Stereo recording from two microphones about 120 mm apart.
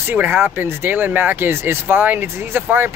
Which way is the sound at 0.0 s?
15° right (ahead or behind).